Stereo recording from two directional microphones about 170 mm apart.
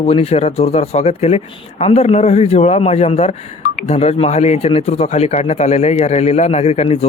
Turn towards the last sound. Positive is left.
turn(degrees=40)  # may be behind; listen again after turning